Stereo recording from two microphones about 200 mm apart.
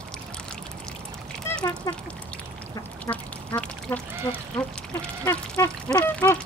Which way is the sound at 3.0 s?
10° left (ahead or behind).